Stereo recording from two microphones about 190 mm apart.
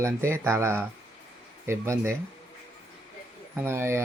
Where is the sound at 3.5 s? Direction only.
15° right (ahead or behind).